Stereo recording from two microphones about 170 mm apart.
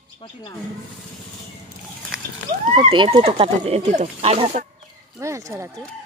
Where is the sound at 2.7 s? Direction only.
30° right (ahead or behind).